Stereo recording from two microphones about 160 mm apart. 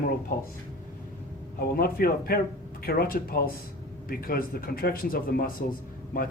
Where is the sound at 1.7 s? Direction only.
70° left (ahead or behind).